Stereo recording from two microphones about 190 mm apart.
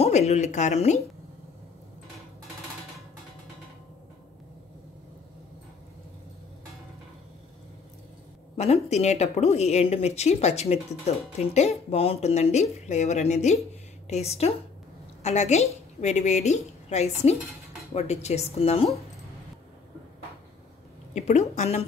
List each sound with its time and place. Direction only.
0.0 s a woman's voice: 35° left (ahead or behind)
8.5 s a woman's voice: 35° left (ahead or behind)
21.1 s a woman's voice: 40° left (ahead or behind)